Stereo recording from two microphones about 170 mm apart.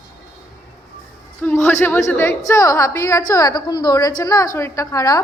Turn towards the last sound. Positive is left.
turn(degrees=20)  # may be behind; listen again after turning